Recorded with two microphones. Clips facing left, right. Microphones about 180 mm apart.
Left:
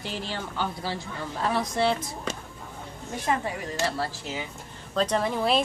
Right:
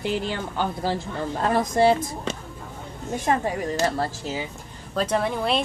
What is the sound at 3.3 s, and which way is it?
Speech, 45° right (ahead or behind).